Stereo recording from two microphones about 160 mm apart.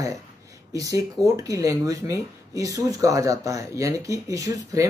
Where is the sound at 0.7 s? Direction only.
20° right (ahead or behind).